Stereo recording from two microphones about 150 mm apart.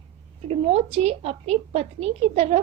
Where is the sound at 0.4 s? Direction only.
45° right (ahead or behind).